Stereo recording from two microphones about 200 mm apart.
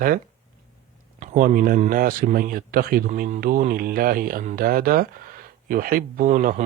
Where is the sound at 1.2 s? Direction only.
45° right (ahead or behind).